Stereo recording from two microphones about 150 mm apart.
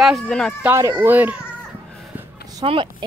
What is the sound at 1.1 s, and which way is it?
Speech, 10° right (ahead or behind).